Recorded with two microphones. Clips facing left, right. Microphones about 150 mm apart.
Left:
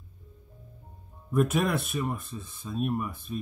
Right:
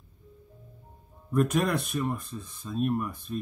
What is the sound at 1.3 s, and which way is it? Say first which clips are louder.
Speech: even; 5° left (ahead or behind).